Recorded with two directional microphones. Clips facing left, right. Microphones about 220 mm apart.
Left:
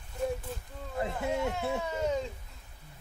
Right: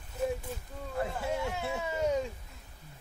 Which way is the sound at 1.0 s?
20° left (ahead or behind).